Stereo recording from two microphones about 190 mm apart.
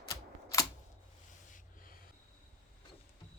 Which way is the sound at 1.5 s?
45° left (ahead or behind).